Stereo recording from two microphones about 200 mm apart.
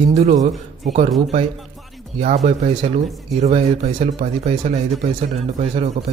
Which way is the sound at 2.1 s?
35° right (ahead or behind).